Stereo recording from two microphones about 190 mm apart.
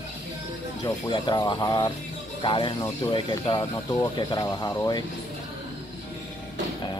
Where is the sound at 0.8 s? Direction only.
20° left (ahead or behind).